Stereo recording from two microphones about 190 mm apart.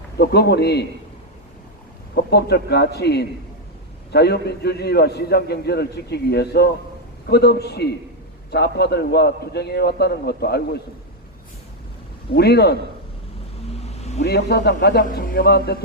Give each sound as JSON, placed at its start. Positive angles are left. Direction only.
{"t": 0.2, "sound": "a man's voice", "side_deg": 60}
{"t": 2.1, "sound": "a man's voice", "side_deg": 60}
{"t": 12.3, "sound": "a man's voice", "side_deg": 60}
{"t": 13.8, "sound": "vehicle", "side_deg": 35}
{"t": 14.2, "sound": "a man's voice", "side_deg": 60}